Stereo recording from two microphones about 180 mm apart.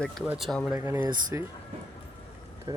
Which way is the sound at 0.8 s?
15° right (ahead or behind).